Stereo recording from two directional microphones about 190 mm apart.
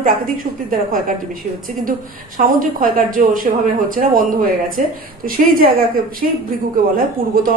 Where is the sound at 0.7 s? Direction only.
45° right (ahead or behind).